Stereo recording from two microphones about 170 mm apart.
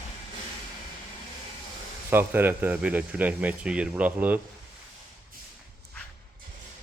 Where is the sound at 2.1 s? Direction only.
10° right (ahead or behind).